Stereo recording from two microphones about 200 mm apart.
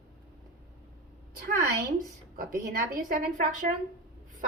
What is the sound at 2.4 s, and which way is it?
A woman's voice, 45° right (ahead or behind).